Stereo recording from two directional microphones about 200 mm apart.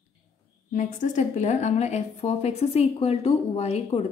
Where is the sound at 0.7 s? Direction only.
40° left (ahead or behind).